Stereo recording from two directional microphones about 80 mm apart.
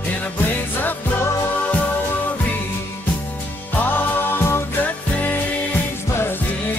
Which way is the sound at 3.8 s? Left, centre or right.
Left.